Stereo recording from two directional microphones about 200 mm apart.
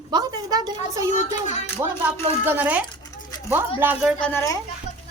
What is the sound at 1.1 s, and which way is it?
Speech, 35° left (ahead or behind).